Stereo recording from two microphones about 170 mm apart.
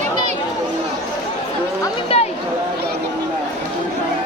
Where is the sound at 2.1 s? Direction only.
35° left (ahead or behind).